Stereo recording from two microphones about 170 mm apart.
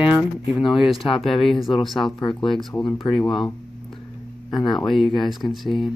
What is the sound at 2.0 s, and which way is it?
Speech, 30° left (ahead or behind).